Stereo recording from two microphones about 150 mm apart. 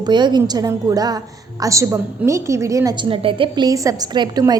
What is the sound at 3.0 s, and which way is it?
A woman's voice, 35° right (ahead or behind).